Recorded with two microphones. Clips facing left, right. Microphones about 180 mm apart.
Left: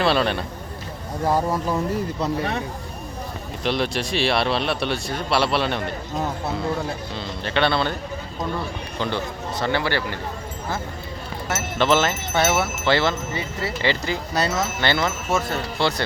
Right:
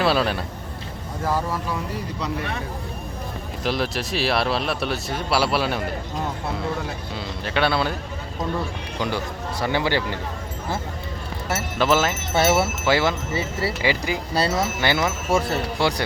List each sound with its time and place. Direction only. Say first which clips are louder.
0.0 s a man's voice: left 1 dB; 5° right (ahead or behind)
2.2 s speech: left 2 dB; 35° left (ahead or behind)
3.6 s speech: left 1 dB; centre (ahead or behind)
7.4 s speech: left 1 dB; 5° right (ahead or behind)
9.0 s speech: even; 10° right (ahead or behind)
11.8 s speech: left 1 dB; 5° right (ahead or behind)
12.4 s speech: right 2 dB; 30° right (ahead or behind)
12.8 s speech: even; 10° right (ahead or behind)
14.3 s speech: right 1 dB; 30° right (ahead or behind)
14.8 s speech: left 2 dB; 10° right (ahead or behind)
15.3 s speech: right 4 dB; 30° right (ahead or behind)
15.8 s speech: left 1 dB; 15° right (ahead or behind)